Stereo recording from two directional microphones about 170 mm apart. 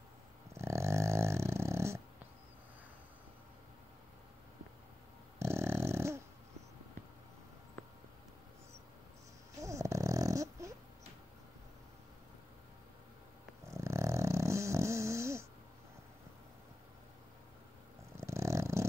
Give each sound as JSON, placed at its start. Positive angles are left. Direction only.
{"t": 0.6, "sound": "dog", "side_deg": -15}
{"t": 5.4, "sound": "dog", "side_deg": -15}
{"t": 9.6, "sound": "dog", "side_deg": -20}
{"t": 13.7, "sound": "dog", "side_deg": -15}
{"t": 18.1, "sound": "purr", "side_deg": -15}